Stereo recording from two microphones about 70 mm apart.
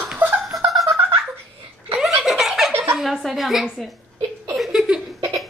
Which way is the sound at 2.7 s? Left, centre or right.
Right.